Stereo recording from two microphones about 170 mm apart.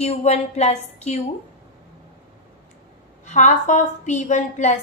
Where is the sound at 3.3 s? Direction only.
45° left (ahead or behind).